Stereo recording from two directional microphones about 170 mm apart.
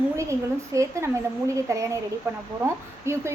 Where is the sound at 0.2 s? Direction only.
15° right (ahead or behind).